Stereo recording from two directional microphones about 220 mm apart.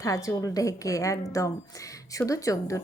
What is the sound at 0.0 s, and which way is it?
A woman's voice, 15° left (ahead or behind).